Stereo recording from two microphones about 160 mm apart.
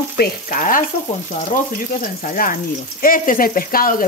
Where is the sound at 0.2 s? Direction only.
60° left (ahead or behind).